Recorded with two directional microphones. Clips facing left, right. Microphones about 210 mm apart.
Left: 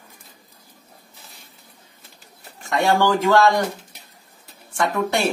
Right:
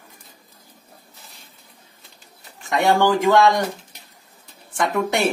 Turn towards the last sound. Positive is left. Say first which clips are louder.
# even
turn(degrees=-15)  # may be behind; listen again after turning